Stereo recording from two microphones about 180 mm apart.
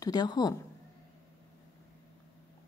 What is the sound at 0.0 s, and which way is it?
Speech, 20° left (ahead or behind).